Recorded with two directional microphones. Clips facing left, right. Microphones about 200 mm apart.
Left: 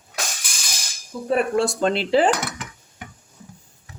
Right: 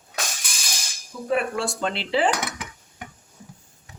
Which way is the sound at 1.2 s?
40° left (ahead or behind).